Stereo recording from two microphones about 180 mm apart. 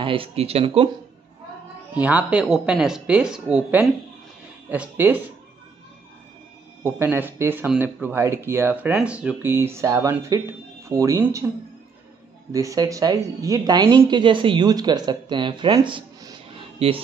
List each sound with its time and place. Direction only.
0.0 s speech: 30° right (ahead or behind)
2.0 s speech: 10° right (ahead or behind)
6.8 s speech: 10° right (ahead or behind)
12.5 s speech: 20° right (ahead or behind)